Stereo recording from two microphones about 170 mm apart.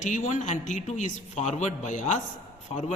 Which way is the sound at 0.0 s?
45° left (ahead or behind).